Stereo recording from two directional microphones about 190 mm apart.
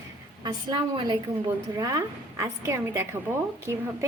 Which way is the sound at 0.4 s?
25° right (ahead or behind).